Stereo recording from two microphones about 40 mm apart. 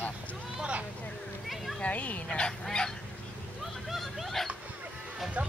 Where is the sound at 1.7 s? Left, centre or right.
Left.